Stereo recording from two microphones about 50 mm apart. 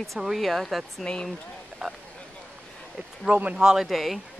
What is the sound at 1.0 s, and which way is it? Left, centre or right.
Speech, centre.